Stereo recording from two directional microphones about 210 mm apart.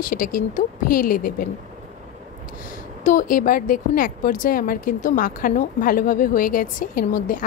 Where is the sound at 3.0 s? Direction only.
40° left (ahead or behind).